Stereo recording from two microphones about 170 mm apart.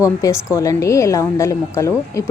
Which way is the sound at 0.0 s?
20° left (ahead or behind).